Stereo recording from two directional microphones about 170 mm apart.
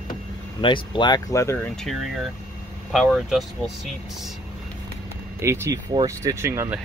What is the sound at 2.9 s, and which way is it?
Speech, centre (ahead or behind).